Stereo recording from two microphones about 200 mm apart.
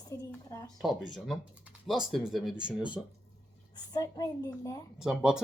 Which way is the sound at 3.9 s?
15° left (ahead or behind).